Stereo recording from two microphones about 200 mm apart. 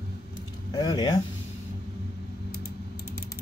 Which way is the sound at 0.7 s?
20° left (ahead or behind).